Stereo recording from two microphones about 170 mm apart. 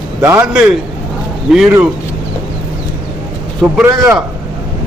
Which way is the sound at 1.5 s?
5° right (ahead or behind).